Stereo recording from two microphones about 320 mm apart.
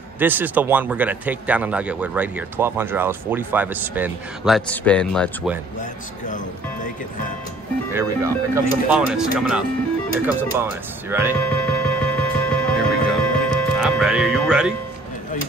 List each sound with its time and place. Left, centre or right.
0.2 s speech: centre
6.2 s speech: left
7.9 s speech: centre
11.5 s music: centre